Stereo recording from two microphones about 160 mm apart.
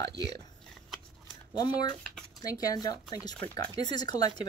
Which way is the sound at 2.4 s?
20° left (ahead or behind).